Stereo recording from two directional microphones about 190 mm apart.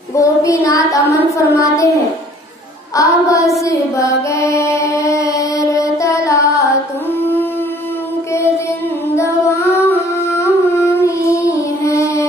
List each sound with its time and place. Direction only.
0.1 s child singing: 15° left (ahead or behind)
0.6 s a sound: 15° left (ahead or behind)
3.0 s child singing: 15° left (ahead or behind)
3.6 s mantra: 15° left (ahead or behind)
9.1 s child singing: 15° left (ahead or behind)